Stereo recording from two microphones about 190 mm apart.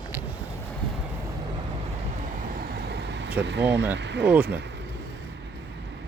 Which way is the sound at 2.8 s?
60° right (ahead or behind).